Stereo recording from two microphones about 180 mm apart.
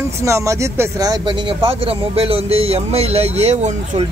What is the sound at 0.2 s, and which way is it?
Speech, 15° right (ahead or behind).